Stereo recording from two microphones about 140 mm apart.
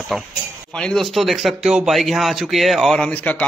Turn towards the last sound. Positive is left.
turn(degrees=10)  # may be behind; listen again after turning